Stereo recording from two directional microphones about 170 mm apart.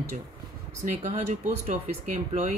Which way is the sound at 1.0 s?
45° right (ahead or behind).